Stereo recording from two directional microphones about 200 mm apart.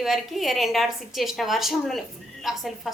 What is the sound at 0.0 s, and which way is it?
A woman's voice, centre (ahead or behind).